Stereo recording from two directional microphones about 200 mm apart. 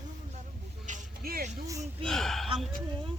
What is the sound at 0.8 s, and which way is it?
Music, 45° right (ahead or behind).